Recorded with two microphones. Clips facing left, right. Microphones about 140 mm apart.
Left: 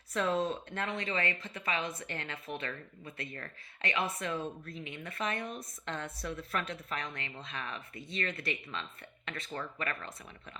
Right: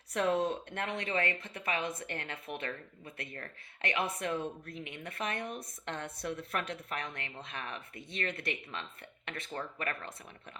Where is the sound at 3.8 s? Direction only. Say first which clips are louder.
Even; 60° right (ahead or behind).